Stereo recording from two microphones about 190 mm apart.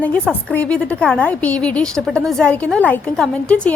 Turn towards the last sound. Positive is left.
turn(degrees=5)  # may be behind; listen again after turning